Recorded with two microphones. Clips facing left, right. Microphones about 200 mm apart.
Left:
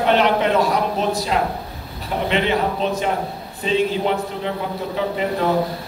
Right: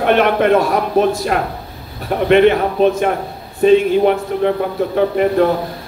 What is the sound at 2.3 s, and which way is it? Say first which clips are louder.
A man's voice: right 9 dB; 55° right (ahead or behind).